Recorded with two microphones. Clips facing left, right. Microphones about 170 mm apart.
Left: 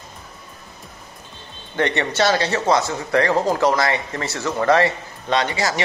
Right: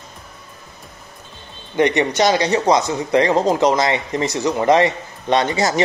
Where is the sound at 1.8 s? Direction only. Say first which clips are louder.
Right 4 dB; 15° right (ahead or behind).